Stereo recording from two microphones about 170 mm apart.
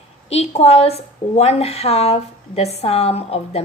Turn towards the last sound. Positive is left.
turn(degrees=35)  # may be behind; listen again after turning